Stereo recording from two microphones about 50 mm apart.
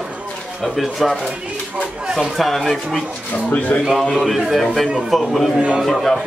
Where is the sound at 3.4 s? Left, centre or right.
Left.